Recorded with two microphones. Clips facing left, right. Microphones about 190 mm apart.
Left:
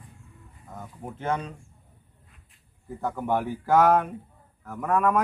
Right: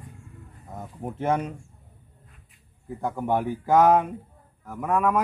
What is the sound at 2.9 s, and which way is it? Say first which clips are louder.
A man's voice: right 1 dB; 15° right (ahead or behind).